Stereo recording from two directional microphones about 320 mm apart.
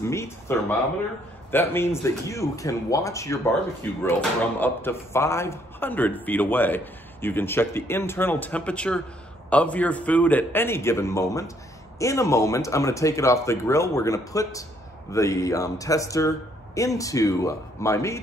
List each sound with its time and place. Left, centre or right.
0.0 s speech: centre